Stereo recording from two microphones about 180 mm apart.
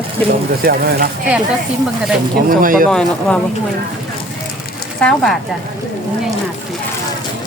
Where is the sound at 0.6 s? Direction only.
55° right (ahead or behind).